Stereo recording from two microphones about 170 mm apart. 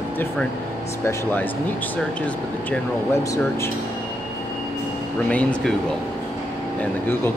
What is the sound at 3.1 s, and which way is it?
Speech, 15° left (ahead or behind).